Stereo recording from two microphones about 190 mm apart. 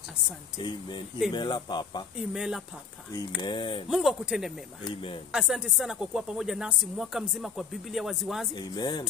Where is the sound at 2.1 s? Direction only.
5° right (ahead or behind).